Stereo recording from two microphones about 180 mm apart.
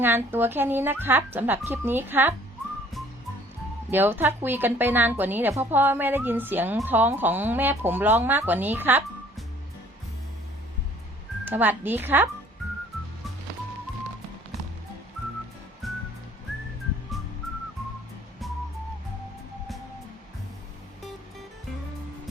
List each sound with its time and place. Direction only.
0.0 s a woman's voice: 10° right (ahead or behind)
3.9 s a woman's voice: 10° right (ahead or behind)
11.4 s a woman's voice: 10° right (ahead or behind)
15.8 s music: centre (ahead or behind)